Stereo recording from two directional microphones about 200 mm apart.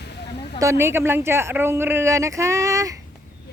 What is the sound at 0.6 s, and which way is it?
Speech, 15° right (ahead or behind).